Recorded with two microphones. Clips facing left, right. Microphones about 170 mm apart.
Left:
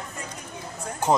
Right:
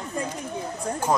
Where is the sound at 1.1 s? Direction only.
20° left (ahead or behind).